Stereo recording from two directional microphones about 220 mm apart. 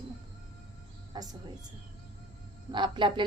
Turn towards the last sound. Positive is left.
turn(degrees=-20)  # may be behind; listen again after turning